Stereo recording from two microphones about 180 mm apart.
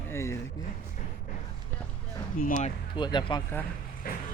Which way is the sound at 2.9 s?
25° left (ahead or behind).